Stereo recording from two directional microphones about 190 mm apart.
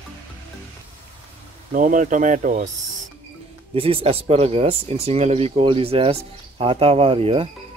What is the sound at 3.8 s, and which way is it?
Speech, 30° right (ahead or behind).